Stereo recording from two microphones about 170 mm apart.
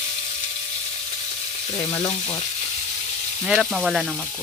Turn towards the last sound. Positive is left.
turn(degrees=0)  # may be behind; listen again after turning